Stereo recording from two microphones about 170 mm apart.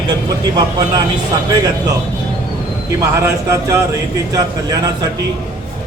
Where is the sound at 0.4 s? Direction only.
25° right (ahead or behind).